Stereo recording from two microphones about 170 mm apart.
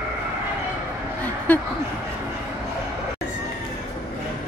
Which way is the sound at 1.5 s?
10° left (ahead or behind).